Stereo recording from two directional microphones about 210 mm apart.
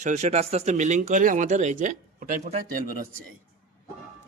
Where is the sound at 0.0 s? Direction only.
35° right (ahead or behind).